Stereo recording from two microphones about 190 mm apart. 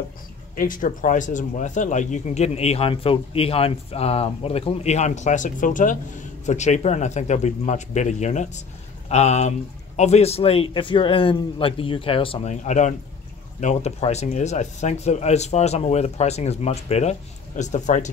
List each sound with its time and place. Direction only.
0.6 s a man's voice: 45° left (ahead or behind)